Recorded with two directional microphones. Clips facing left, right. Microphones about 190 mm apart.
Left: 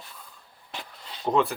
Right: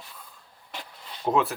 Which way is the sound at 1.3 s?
5° right (ahead or behind).